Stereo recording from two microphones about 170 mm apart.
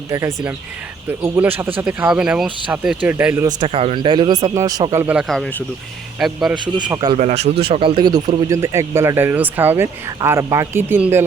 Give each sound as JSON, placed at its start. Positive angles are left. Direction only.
{"t": 0.1, "sound": "speech", "side_deg": -15}
{"t": 3.7, "sound": "speech", "side_deg": -35}
{"t": 5.1, "sound": "speech", "side_deg": 0}
{"t": 6.9, "sound": "speech", "side_deg": -25}
{"t": 7.2, "sound": "speech", "side_deg": -40}